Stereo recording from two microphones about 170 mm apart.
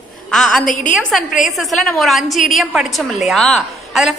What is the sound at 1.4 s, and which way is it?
A woman's voice, centre (ahead or behind).